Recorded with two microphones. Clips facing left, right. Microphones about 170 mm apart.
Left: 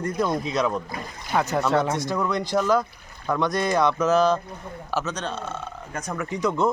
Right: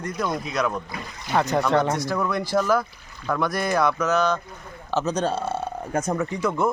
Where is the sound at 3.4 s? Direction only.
20° left (ahead or behind).